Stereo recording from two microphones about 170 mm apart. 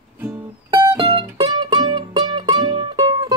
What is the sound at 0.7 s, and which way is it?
Music, 25° right (ahead or behind).